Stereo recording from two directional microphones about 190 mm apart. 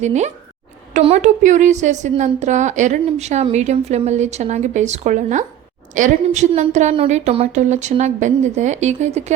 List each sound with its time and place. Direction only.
0.0 s a woman's voice: 35° right (ahead or behind)